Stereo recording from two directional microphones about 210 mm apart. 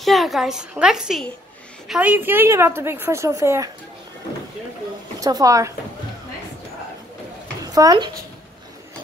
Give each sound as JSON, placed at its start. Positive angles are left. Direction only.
{"t": 0.0, "sound": "a woman's voice", "side_deg": 0}
{"t": 5.2, "sound": "a woman's voice", "side_deg": -15}
{"t": 7.6, "sound": "speech", "side_deg": -15}